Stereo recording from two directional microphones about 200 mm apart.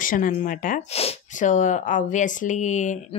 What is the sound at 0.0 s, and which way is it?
Speech, 45° left (ahead or behind).